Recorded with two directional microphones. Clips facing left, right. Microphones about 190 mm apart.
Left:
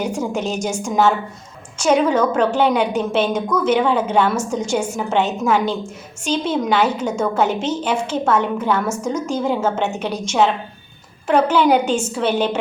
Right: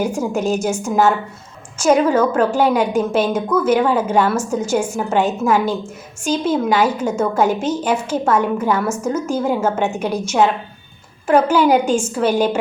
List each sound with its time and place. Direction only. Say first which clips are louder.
0.0 s a woman's voice: right 3 dB; 10° right (ahead or behind)